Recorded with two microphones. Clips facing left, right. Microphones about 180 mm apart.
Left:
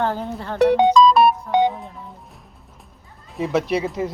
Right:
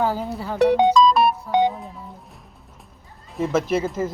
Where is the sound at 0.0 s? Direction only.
5° right (ahead or behind).